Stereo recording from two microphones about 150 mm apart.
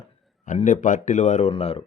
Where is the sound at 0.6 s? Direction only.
55° left (ahead or behind); by 1.8 s 40° left (ahead or behind).